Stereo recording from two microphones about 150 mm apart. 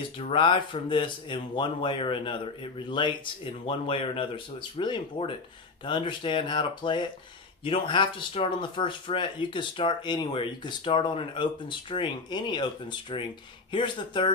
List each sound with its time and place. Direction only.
0.2 s speech: 35° left (ahead or behind)